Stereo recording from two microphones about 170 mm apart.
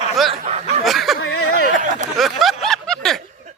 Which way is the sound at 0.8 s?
Centre (ahead or behind).